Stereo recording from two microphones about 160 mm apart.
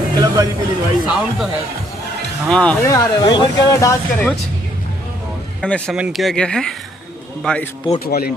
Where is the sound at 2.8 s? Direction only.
20° left (ahead or behind).